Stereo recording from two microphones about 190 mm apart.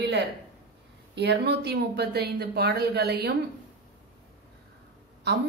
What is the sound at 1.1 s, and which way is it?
Speech, 60° right (ahead or behind).